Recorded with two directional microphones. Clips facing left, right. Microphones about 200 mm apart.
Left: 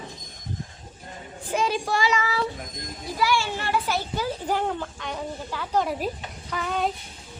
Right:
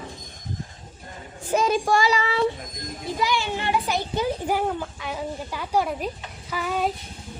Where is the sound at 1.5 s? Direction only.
45° right (ahead or behind).